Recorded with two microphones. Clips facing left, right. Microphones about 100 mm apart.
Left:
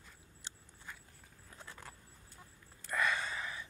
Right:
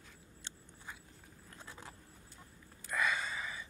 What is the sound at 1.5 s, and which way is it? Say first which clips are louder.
Vehicle: even; 15° right (ahead or behind).